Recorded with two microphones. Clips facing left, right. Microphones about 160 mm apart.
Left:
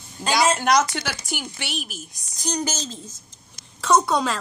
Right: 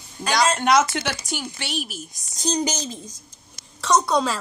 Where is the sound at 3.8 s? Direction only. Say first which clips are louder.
Even; centre (ahead or behind).